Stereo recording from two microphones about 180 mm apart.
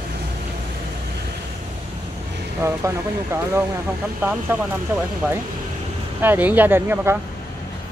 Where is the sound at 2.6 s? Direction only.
15° right (ahead or behind).